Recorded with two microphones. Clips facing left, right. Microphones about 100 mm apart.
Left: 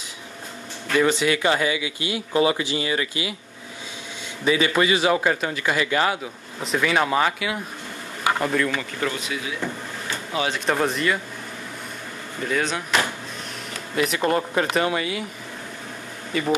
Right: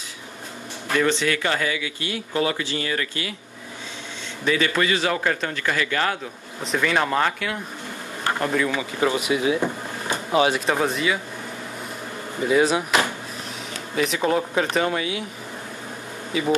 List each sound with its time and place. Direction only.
0.9 s speech: 10° left (ahead or behind)
4.5 s speech: 15° left (ahead or behind)
6.6 s speech: centre (ahead or behind); by 10.1 s 20° right (ahead or behind)
10.5 s speech: 5° right (ahead or behind)
12.4 s speech: 10° right (ahead or behind)
13.9 s speech: centre (ahead or behind)
16.3 s speech: centre (ahead or behind)